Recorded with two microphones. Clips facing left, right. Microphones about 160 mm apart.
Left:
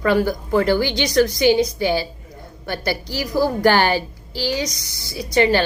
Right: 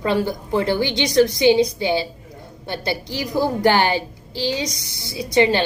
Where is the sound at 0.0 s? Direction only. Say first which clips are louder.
Left 3 dB; 20° right (ahead or behind).